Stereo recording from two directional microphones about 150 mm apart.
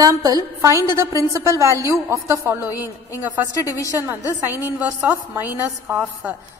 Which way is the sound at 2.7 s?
20° left (ahead or behind).